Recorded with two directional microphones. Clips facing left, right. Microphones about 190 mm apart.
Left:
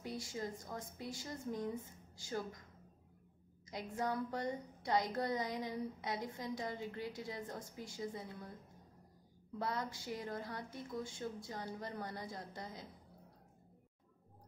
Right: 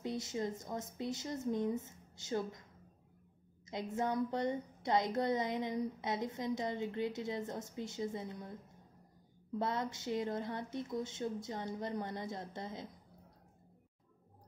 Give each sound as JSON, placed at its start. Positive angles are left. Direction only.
{"t": 0.0, "sound": "a woman's voice", "side_deg": -20}
{"t": 3.7, "sound": "a woman's voice", "side_deg": -25}
{"t": 9.6, "sound": "a woman's voice", "side_deg": -25}